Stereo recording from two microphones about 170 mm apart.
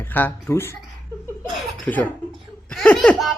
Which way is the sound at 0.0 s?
10° left (ahead or behind).